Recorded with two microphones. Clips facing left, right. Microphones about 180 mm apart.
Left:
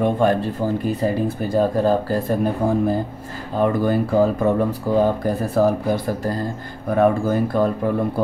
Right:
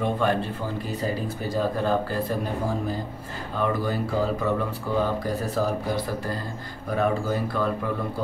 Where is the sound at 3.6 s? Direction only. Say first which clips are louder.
Left 7 dB; 55° left (ahead or behind).